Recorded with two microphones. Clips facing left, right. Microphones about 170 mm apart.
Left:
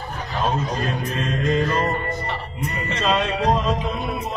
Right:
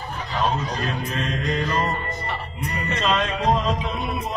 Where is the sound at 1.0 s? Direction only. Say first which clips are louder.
Left 3 dB; 50° left (ahead or behind).